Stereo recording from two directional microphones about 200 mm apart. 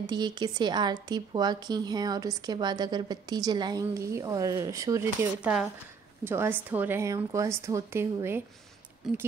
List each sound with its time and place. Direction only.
0.0 s a woman's voice: 20° right (ahead or behind)